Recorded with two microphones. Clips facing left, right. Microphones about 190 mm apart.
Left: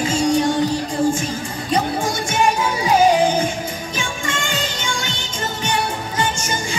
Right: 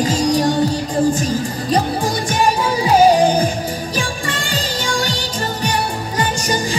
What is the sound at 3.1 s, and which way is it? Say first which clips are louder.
Music: right 3 dB; 35° right (ahead or behind).